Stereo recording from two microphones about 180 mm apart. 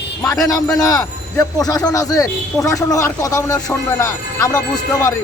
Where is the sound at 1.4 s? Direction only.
20° left (ahead or behind).